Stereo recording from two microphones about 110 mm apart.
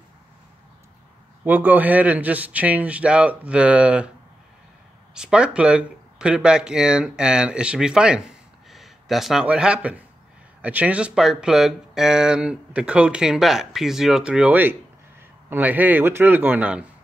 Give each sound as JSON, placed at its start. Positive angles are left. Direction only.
{"t": 1.4, "sound": "speech", "side_deg": -15}
{"t": 5.1, "sound": "speech", "side_deg": -5}